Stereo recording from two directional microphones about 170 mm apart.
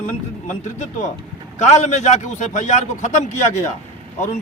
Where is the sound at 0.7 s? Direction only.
40° left (ahead or behind).